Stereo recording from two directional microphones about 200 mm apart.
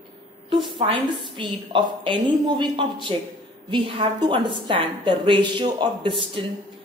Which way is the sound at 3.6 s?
25° right (ahead or behind).